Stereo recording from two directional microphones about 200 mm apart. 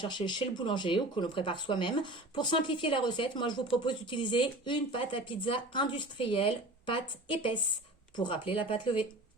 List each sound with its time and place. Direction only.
0.0 s speech: 25° left (ahead or behind)
8.1 s speech: 25° left (ahead or behind)